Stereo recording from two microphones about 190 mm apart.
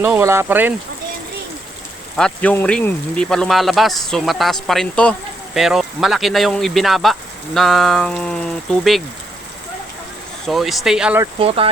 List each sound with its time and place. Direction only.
0.0 s speech: 10° right (ahead or behind)
2.1 s speech: 5° left (ahead or behind)
10.4 s speech: centre (ahead or behind)
11.3 s speech: 30° right (ahead or behind)